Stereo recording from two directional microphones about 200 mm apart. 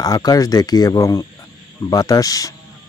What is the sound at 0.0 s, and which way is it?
Speech, 20° left (ahead or behind).